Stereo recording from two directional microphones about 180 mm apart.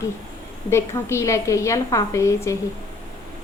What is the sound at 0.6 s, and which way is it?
A woman's voice, 15° left (ahead or behind).